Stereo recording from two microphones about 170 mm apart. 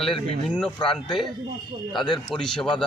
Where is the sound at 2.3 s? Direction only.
5° left (ahead or behind).